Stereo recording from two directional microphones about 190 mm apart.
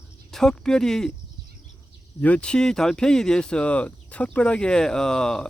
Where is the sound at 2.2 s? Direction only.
5° left (ahead or behind).